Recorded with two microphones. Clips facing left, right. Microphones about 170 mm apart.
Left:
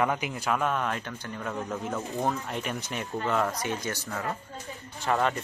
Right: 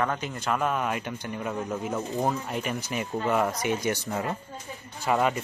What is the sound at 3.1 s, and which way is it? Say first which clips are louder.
Speech: right 2 dB; 15° right (ahead or behind).